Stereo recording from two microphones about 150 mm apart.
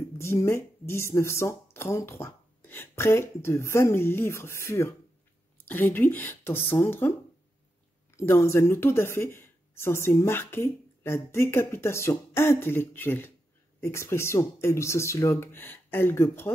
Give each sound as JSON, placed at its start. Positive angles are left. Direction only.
{"t": 0.2, "sound": "speech", "side_deg": 15}